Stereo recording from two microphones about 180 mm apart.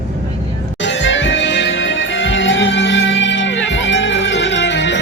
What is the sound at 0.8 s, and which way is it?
Music, 90° left.